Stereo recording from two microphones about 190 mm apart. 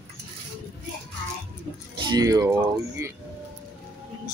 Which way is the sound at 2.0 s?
20° right (ahead or behind).